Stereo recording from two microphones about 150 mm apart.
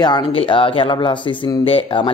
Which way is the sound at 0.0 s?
30° left (ahead or behind).